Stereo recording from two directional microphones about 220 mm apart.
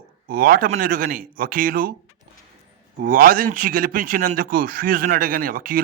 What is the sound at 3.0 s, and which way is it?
A man's voice, 40° right (ahead or behind).